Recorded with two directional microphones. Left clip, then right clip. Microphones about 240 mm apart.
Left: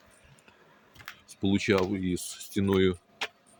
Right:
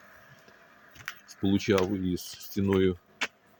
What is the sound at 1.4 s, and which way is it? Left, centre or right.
Speech, centre.